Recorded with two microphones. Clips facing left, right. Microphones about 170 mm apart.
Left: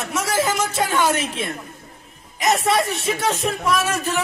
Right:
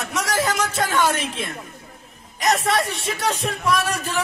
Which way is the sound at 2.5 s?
25° left (ahead or behind).